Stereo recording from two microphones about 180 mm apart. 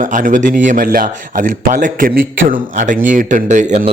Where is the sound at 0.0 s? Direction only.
45° right (ahead or behind).